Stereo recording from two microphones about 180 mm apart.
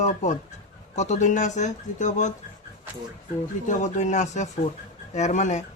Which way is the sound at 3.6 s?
45° left (ahead or behind).